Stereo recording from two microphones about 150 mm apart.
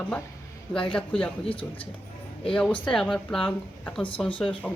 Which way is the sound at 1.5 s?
35° left (ahead or behind).